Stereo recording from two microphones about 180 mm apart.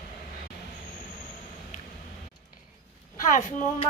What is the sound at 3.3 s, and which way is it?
Speech, 40° left (ahead or behind).